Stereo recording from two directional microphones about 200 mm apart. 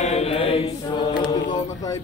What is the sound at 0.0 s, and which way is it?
Chant, 30° left (ahead or behind).